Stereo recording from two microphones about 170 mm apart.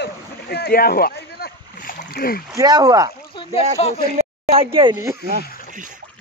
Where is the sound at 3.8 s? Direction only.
35° left (ahead or behind).